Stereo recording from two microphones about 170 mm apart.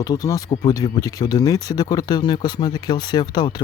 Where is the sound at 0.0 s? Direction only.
20° left (ahead or behind).